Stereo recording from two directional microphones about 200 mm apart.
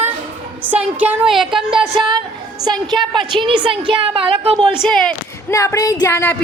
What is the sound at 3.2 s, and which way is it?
A woman's voice, 25° right (ahead or behind).